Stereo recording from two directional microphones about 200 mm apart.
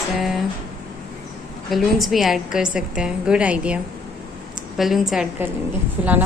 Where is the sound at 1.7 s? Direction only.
Centre (ahead or behind).